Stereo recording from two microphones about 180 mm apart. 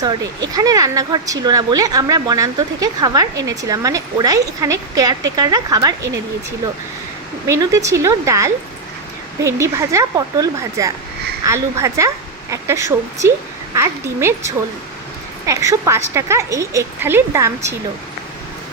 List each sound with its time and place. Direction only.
0.0 s speech: 20° right (ahead or behind)
7.4 s a woman's voice: 15° right (ahead or behind)